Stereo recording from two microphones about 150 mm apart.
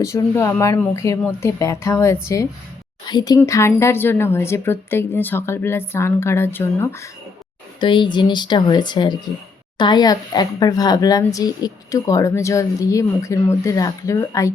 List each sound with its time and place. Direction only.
0.0 s a woman's voice: 20° left (ahead or behind)
7.8 s a woman's voice: 35° left (ahead or behind)